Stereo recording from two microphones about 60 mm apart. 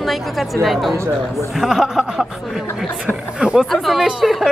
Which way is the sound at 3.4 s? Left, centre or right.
Centre.